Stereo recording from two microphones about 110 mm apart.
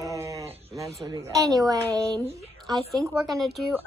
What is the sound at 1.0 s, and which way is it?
A woman's voice, 30° right (ahead or behind).